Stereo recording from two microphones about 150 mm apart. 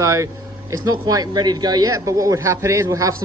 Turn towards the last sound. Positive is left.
turn(degrees=-20)  # may be behind; listen again after turning